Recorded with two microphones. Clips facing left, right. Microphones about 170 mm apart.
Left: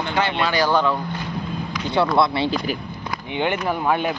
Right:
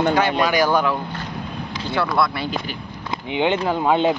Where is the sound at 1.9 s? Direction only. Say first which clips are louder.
Left 3 dB; 25° left (ahead or behind).